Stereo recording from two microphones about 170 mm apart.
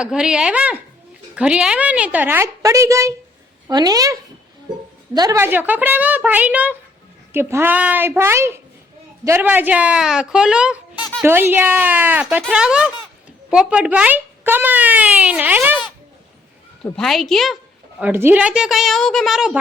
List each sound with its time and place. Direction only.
0.0 s a woman's voice: 5° right (ahead or behind)
16.8 s a woman's voice: 5° left (ahead or behind)
18.0 s a woman's voice: 10° right (ahead or behind)